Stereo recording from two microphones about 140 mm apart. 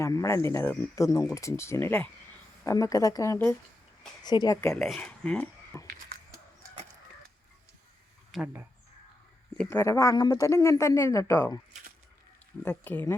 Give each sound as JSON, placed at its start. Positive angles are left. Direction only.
{"t": 0.0, "sound": "speech", "side_deg": 20}
{"t": 4.2, "sound": "speech", "side_deg": 30}
{"t": 4.7, "sound": "speech", "side_deg": 5}
{"t": 5.7, "sound": "a sound", "side_deg": 20}
{"t": 8.3, "sound": "speech", "side_deg": 0}
{"t": 9.6, "sound": "speech", "side_deg": 20}
{"t": 12.6, "sound": "speech", "side_deg": 15}